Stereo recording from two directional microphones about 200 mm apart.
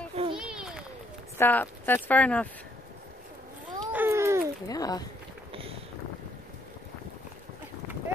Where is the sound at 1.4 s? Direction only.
10° left (ahead or behind).